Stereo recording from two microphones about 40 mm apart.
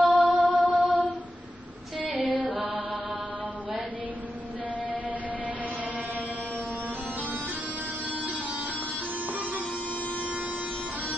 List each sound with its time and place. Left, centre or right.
0.0 s music: right
2.1 s music: right
9.3 s music: right